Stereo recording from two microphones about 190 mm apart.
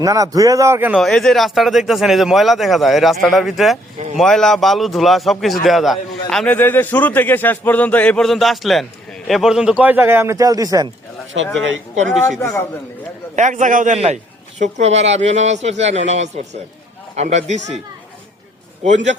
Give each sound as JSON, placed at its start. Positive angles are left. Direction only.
{"t": 0.0, "sound": "a man's voice", "side_deg": -20}
{"t": 12.4, "sound": "a man's voice", "side_deg": 15}
{"t": 13.3, "sound": "a man's voice", "side_deg": -40}
{"t": 18.8, "sound": "a man's voice", "side_deg": -40}